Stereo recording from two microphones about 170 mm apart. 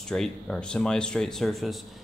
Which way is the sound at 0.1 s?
Centre (ahead or behind).